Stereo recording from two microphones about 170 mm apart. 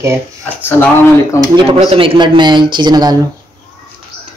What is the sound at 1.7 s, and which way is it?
Speech, 35° right (ahead or behind).